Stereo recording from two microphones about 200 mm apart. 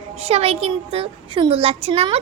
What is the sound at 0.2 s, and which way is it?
A child's voice, 30° right (ahead or behind).